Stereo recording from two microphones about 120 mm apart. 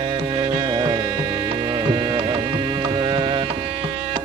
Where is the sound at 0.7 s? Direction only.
40° right (ahead or behind).